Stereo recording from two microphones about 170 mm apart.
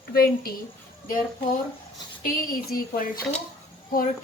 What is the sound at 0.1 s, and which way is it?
Speech, 65° left (ahead or behind).